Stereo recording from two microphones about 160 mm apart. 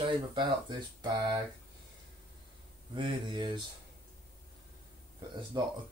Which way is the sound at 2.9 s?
30° right (ahead or behind).